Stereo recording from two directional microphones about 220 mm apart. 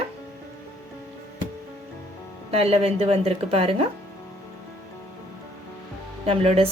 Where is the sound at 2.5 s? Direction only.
25° right (ahead or behind).